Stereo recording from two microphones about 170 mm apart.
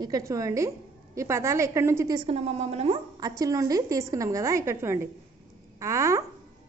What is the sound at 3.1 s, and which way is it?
A woman's voice, 20° right (ahead or behind).